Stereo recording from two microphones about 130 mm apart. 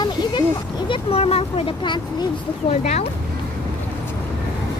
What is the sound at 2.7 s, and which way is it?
Speech, 60° left (ahead or behind).